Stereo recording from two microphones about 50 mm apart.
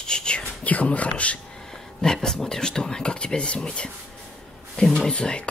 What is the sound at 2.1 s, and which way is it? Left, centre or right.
Speech, centre.